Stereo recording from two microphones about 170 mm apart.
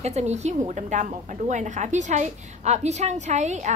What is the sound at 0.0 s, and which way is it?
A woman's voice, 40° right (ahead or behind).